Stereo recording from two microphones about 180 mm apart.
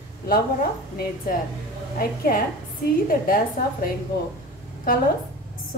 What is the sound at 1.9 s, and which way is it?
Speech, 55° left (ahead or behind).